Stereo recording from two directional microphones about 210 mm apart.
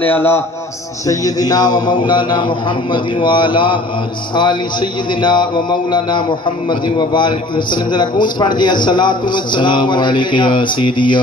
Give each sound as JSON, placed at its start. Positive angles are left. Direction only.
{"t": 0.0, "sound": "a man's voice", "side_deg": 10}
{"t": 5.2, "sound": "a man's voice", "side_deg": 20}